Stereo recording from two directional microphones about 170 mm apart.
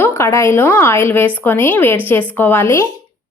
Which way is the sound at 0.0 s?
15° left (ahead or behind).